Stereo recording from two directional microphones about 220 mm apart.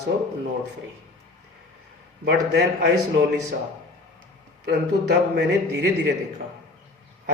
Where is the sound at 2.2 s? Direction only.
50° right (ahead or behind).